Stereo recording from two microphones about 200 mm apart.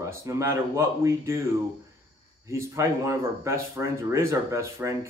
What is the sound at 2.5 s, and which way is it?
Speech, 15° right (ahead or behind).